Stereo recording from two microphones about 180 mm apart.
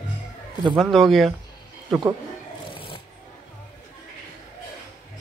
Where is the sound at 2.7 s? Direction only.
30° left (ahead or behind).